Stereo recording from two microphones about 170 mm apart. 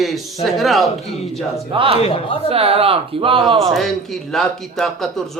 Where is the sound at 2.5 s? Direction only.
35° right (ahead or behind).